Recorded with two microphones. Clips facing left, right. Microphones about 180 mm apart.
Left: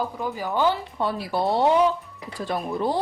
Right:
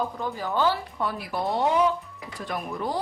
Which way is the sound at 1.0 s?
30° left (ahead or behind).